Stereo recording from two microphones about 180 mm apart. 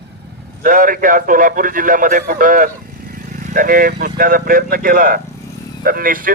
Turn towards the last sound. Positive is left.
turn(degrees=-50)  # may be behind; listen again after turning